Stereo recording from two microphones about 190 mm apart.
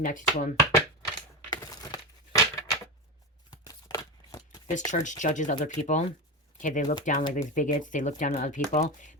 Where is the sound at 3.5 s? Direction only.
20° left (ahead or behind).